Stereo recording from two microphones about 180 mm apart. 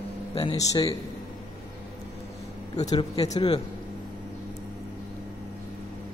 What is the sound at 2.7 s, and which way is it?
Speech, 20° left (ahead or behind).